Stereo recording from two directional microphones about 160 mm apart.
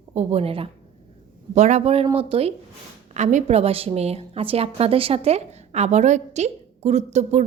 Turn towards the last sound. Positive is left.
turn(degrees=-45)  # may be behind; listen again after turning